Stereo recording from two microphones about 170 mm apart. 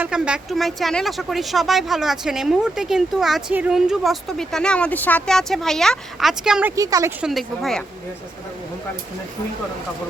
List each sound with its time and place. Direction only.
0.0 s speech: 5° right (ahead or behind)
6.7 s speech: 20° right (ahead or behind)
7.2 s speech: centre (ahead or behind)